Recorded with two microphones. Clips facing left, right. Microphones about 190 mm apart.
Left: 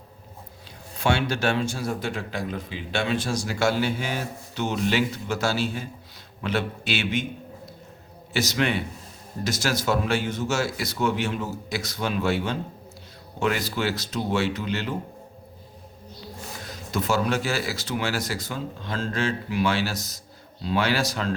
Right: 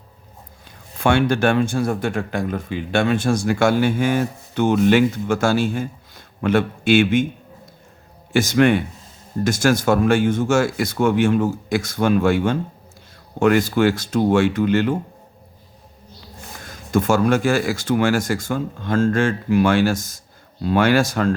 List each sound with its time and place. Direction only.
1.0 s speech: 55° right (ahead or behind)
8.3 s speech: 50° right (ahead or behind)
16.6 s speech: 50° right (ahead or behind)